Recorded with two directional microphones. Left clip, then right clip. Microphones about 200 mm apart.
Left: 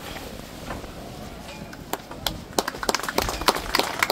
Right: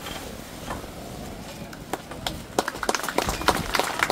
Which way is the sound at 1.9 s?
50° left (ahead or behind).